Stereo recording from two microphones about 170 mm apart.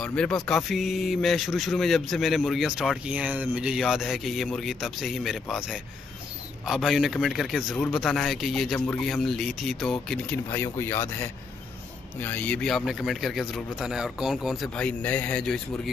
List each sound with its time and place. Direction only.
0.0 s speech: 5° left (ahead or behind)
6.6 s speech: centre (ahead or behind)
10.3 s speech: 15° left (ahead or behind)